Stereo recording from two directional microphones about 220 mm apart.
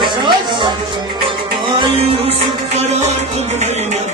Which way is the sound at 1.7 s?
25° right (ahead or behind).